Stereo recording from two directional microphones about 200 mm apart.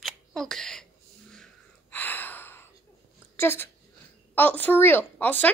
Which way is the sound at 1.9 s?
10° left (ahead or behind).